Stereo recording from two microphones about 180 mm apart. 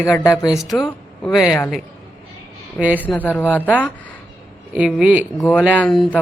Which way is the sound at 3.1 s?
10° left (ahead or behind).